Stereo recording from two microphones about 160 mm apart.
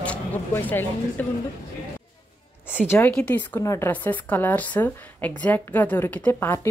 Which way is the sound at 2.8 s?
15° left (ahead or behind).